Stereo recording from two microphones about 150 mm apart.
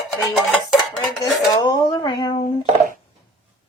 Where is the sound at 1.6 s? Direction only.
30° left (ahead or behind).